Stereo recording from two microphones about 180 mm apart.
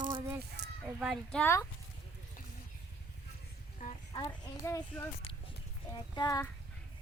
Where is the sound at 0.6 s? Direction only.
70° right (ahead or behind).